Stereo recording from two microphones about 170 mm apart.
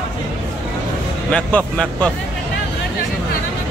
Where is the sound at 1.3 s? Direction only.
5° left (ahead or behind).